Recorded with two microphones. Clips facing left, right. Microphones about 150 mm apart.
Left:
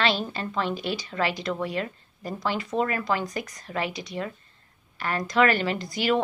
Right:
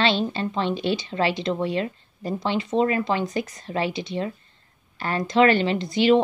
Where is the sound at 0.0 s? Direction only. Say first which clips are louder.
Right 4 dB; 30° right (ahead or behind).